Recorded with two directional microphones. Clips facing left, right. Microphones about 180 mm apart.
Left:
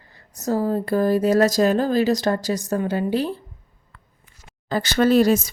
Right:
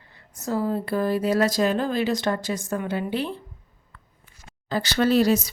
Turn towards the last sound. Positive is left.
turn(degrees=50)  # may be behind; listen again after turning